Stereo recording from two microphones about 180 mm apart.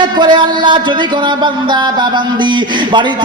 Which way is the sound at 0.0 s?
25° right (ahead or behind).